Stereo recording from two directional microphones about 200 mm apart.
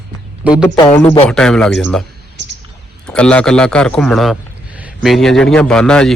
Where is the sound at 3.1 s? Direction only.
5° left (ahead or behind).